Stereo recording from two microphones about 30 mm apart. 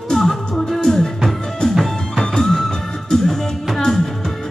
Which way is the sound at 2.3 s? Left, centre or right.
Left.